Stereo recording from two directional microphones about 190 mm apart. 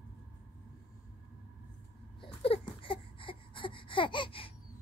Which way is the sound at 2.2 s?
30° left (ahead or behind).